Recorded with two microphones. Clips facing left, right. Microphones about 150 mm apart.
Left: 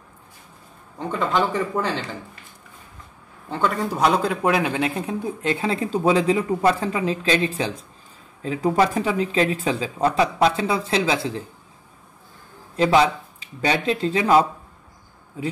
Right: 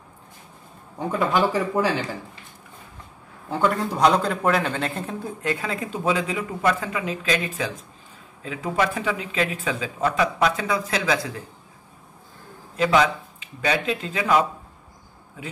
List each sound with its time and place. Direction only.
0.9 s speech: 5° right (ahead or behind)
3.4 s a man's voice: 5° right (ahead or behind); by 11.4 s 25° left (ahead or behind)
12.7 s speech: 30° left (ahead or behind)